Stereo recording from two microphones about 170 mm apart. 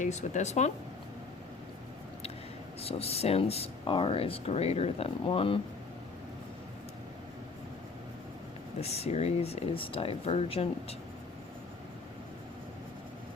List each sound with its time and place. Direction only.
0.0 s speech: 45° left (ahead or behind)
2.8 s speech: 35° left (ahead or behind)
8.8 s speech: 35° left (ahead or behind)